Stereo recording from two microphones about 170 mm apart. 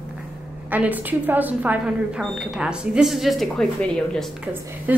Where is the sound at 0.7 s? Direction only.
10° right (ahead or behind).